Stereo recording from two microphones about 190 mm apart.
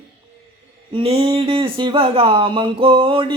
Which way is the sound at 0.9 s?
30° right (ahead or behind).